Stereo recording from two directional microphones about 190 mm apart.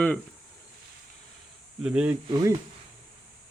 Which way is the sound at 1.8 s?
5° right (ahead or behind).